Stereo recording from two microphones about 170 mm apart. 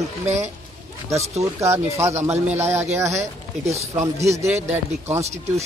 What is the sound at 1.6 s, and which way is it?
Speech, 15° right (ahead or behind).